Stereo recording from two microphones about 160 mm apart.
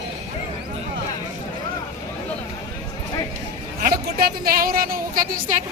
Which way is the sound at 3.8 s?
70° right (ahead or behind).